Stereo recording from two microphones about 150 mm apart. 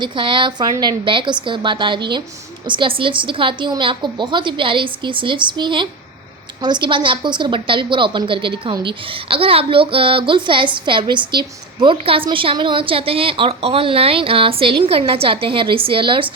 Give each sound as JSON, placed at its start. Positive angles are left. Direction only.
{"t": 0.0, "sound": "a woman's voice", "side_deg": -35}